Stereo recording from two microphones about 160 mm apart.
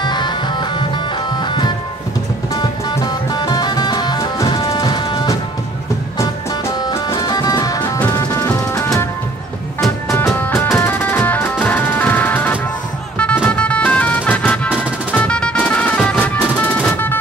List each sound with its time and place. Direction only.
0.0 s music: 25° left (ahead or behind)
6.8 s music: 20° left (ahead or behind)
10.1 s music: 15° left (ahead or behind)